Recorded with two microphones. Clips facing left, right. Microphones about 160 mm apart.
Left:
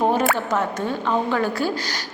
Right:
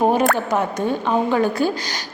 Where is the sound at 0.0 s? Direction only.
15° right (ahead or behind).